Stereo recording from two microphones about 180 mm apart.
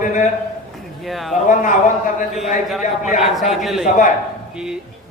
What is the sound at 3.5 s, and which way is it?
Speech, centre (ahead or behind).